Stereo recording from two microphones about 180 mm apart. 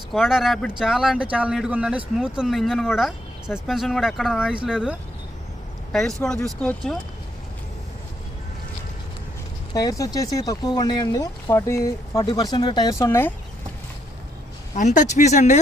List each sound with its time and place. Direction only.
0.1 s speech: centre (ahead or behind)
9.7 s speech: 20° left (ahead or behind)
14.8 s speech: 40° left (ahead or behind)